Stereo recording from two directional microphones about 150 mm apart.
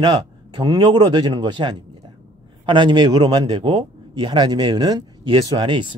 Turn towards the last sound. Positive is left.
turn(degrees=-30)  # may be behind; listen again after turning